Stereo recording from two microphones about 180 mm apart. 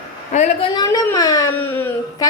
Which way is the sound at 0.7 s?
20° left (ahead or behind).